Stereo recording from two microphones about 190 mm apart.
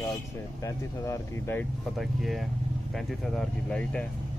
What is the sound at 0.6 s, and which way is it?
Speech, 15° left (ahead or behind).